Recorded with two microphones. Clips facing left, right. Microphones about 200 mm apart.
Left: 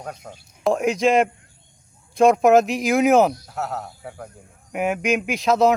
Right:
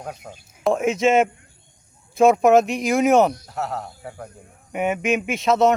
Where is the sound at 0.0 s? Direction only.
5° right (ahead or behind).